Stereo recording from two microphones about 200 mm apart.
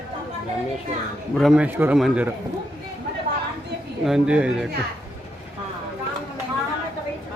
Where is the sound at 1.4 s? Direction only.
5° right (ahead or behind).